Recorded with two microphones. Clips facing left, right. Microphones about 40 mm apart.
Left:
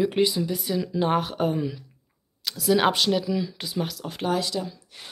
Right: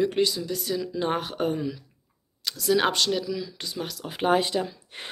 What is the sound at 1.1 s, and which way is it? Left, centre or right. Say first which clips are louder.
A woman's voice: left 2 dB; centre.